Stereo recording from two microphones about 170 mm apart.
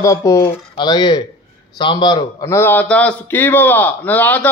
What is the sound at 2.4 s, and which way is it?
A man's voice, 15° left (ahead or behind).